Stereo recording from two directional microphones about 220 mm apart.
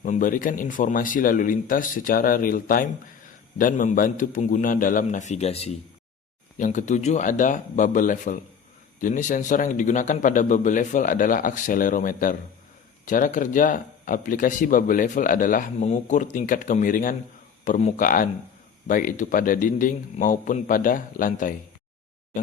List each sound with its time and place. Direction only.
0.0 s speech: 35° left (ahead or behind)